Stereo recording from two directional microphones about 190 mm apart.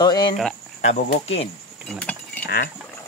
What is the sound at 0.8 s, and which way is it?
Cricket, 40° left (ahead or behind).